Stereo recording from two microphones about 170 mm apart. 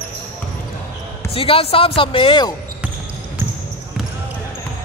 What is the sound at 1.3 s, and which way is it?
Speech, 35° left (ahead or behind).